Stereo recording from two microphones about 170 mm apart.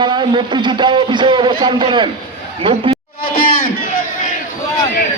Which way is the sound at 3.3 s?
60° left (ahead or behind).